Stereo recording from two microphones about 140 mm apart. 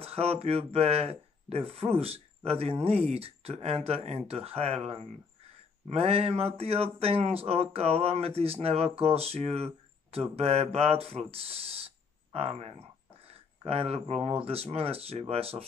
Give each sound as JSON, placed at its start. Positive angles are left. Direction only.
{"t": 0.0, "sound": "speech", "side_deg": -45}
{"t": 5.9, "sound": "speech", "side_deg": -45}